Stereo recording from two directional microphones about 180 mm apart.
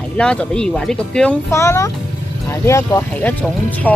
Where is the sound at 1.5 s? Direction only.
15° left (ahead or behind).